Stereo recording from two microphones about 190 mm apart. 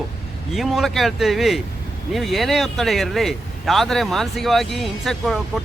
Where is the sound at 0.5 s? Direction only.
Centre (ahead or behind).